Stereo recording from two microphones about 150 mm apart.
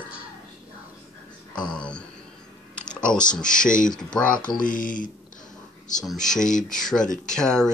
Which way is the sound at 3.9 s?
5° left (ahead or behind).